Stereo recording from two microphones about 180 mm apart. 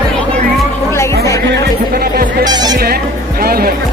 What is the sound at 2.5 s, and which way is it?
Speech, 25° right (ahead or behind).